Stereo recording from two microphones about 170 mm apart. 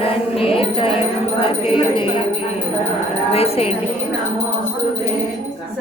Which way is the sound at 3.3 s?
35° left (ahead or behind).